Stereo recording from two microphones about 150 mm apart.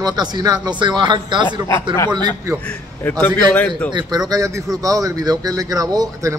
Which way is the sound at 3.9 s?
30° right (ahead or behind).